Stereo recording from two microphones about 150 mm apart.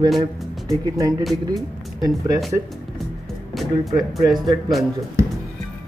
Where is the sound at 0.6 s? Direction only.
20° right (ahead or behind).